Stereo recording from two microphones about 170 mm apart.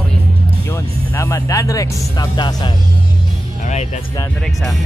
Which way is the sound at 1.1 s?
15° left (ahead or behind).